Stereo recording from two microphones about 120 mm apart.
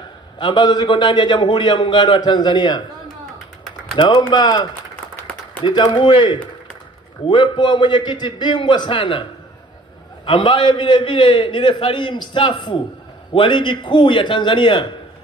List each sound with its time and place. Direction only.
0.4 s a man's voice: 40° left (ahead or behind)
3.9 s a man's voice: 35° left (ahead or behind)
10.2 s a man's voice: 40° left (ahead or behind)